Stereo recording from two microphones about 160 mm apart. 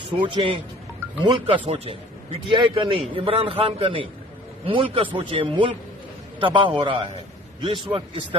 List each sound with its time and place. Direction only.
0.2 s a man's voice: 30° right (ahead or behind)